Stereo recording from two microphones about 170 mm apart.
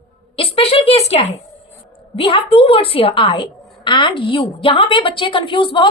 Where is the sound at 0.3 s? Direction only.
35° left (ahead or behind).